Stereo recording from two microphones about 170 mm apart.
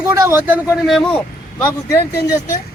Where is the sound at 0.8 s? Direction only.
Centre (ahead or behind).